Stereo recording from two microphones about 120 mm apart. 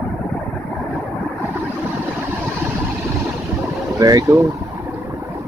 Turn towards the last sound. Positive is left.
turn(degrees=-30)  # may be behind; listen again after turning